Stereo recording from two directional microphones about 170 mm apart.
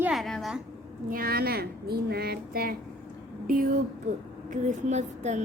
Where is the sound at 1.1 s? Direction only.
65° right (ahead or behind).